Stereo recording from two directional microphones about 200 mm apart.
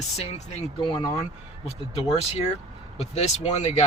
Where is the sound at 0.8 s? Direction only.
20° left (ahead or behind).